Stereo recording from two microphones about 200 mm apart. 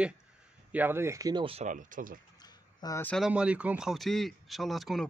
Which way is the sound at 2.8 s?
15° left (ahead or behind).